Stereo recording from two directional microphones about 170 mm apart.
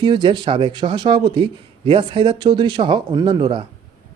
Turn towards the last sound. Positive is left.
turn(degrees=-25)  # may be behind; listen again after turning